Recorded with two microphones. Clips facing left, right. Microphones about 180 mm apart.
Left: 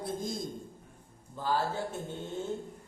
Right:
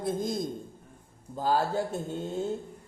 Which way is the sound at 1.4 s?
40° right (ahead or behind).